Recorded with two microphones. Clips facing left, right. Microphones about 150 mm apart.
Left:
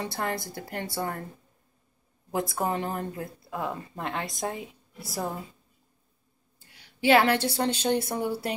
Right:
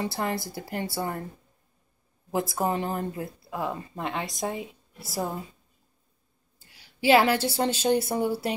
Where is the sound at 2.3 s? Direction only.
5° right (ahead or behind).